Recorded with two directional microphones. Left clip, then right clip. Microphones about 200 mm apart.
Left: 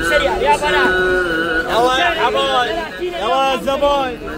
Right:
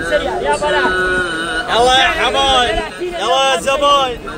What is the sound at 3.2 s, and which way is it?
Speech, 65° right (ahead or behind).